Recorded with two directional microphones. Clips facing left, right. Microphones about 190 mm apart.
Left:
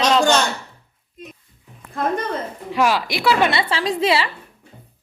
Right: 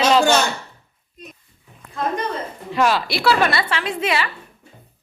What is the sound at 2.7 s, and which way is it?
A woman's voice, 10° left (ahead or behind).